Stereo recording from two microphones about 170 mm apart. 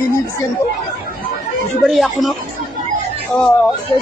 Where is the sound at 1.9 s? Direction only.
Centre (ahead or behind).